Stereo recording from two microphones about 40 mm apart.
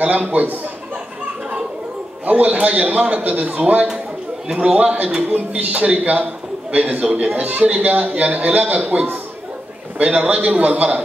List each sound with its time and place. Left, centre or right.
0.0 s a man's voice: right
2.2 s a man's voice: right